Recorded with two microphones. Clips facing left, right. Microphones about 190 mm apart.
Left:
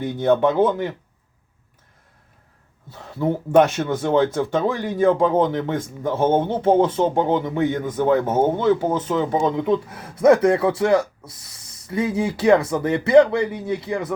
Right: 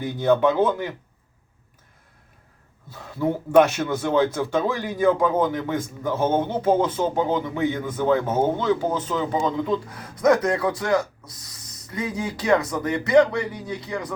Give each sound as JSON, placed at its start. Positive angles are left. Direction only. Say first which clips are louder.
{"t": 0.0, "sound": "speech", "louder": "left 1 dB", "side_deg": 25}
{"t": 2.9, "sound": "speech", "louder": "left 2 dB", "side_deg": 20}